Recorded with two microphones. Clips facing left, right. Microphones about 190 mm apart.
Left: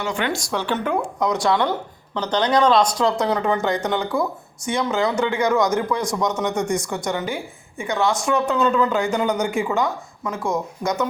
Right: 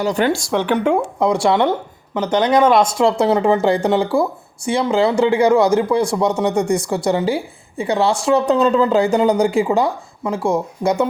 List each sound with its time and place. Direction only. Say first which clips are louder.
0.0 s speech: right 7 dB; 40° right (ahead or behind)